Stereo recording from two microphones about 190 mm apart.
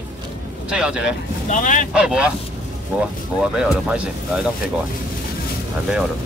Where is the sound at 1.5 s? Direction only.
40° left (ahead or behind).